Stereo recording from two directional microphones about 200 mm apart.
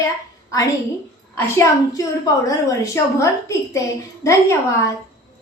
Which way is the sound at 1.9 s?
15° left (ahead or behind).